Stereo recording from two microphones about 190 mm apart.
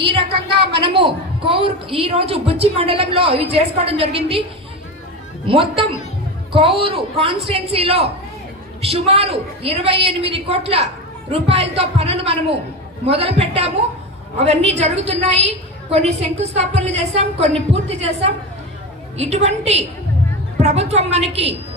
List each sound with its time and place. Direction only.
0.4 s a woman's voice: 60° right (ahead or behind)
0.8 s a woman's voice: 25° right (ahead or behind)
5.5 s a woman's voice: 30° right (ahead or behind)